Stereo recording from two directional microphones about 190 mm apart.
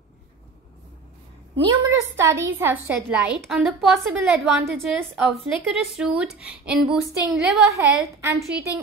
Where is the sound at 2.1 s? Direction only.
15° right (ahead or behind).